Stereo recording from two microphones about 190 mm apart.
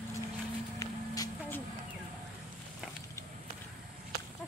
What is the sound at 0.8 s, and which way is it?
Music, 15° left (ahead or behind).